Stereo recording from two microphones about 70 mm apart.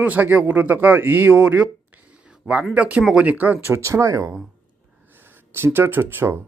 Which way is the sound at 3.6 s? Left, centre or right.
Right.